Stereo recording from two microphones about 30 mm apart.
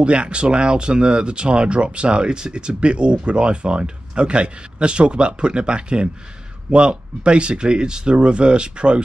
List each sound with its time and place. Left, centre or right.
0.0 s speech: right